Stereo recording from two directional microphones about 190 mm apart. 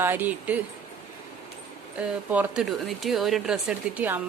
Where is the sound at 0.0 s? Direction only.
10° right (ahead or behind).